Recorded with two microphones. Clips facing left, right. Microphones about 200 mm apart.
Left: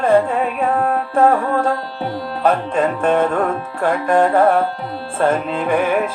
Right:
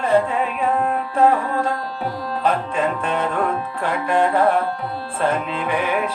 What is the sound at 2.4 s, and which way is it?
Music, 45° left (ahead or behind).